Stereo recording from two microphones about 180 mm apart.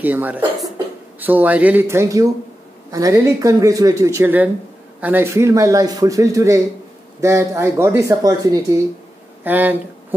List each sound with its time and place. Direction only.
0.0 s speech: 10° right (ahead or behind)